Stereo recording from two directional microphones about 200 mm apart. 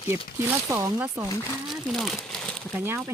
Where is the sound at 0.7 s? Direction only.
15° right (ahead or behind).